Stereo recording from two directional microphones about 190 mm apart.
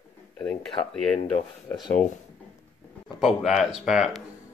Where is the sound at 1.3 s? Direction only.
25° left (ahead or behind).